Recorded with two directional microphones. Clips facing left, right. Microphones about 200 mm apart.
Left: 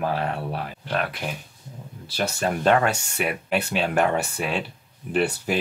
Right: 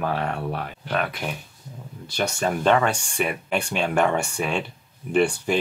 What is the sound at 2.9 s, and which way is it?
Speech, 5° left (ahead or behind).